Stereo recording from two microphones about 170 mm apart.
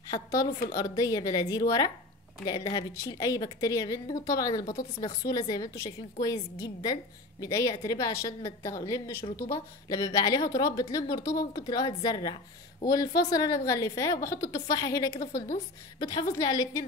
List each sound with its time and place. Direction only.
0.1 s a woman's voice: 20° left (ahead or behind)
15.3 s a woman's voice: 50° left (ahead or behind)
16.0 s a woman's voice: 25° left (ahead or behind)